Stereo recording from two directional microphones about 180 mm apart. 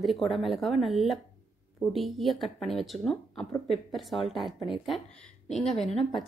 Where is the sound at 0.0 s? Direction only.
Centre (ahead or behind).